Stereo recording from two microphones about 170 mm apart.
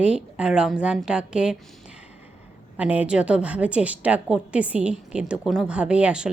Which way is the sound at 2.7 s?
10° right (ahead or behind).